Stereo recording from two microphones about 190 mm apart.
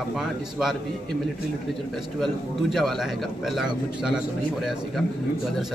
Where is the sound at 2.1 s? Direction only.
Centre (ahead or behind).